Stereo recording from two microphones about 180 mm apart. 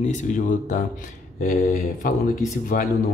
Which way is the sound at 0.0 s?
45° left (ahead or behind).